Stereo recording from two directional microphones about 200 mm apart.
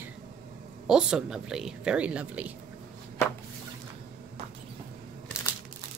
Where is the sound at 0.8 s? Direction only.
5° right (ahead or behind).